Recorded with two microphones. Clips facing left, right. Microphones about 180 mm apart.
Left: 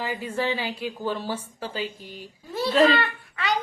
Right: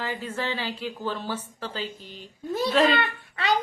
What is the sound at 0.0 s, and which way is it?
A woman's voice, 15° left (ahead or behind).